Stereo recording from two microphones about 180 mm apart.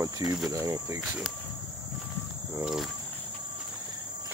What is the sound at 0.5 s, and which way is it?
Speech, 20° right (ahead or behind).